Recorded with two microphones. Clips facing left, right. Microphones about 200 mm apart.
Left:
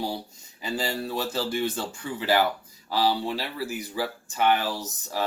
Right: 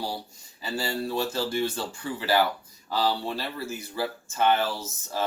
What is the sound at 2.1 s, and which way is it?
Speech, 15° left (ahead or behind).